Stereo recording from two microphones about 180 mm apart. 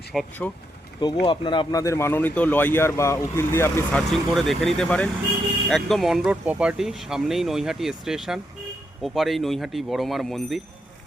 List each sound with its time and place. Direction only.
0.1 s speech: 5° left (ahead or behind)
1.2 s speech: 25° left (ahead or behind)
4.1 s speech: centre (ahead or behind)